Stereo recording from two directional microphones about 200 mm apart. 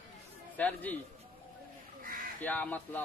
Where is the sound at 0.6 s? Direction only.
10° left (ahead or behind).